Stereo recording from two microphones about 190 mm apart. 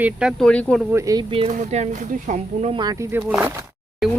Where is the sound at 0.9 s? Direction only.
15° right (ahead or behind).